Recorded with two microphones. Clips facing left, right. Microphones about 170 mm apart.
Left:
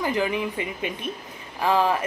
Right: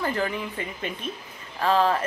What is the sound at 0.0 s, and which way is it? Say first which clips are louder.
Speech: left 3 dB; 15° left (ahead or behind).